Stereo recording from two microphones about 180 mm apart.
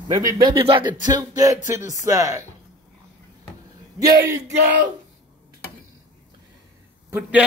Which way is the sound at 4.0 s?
20° right (ahead or behind).